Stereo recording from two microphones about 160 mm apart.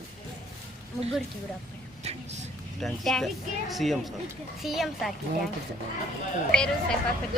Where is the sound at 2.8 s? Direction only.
Centre (ahead or behind).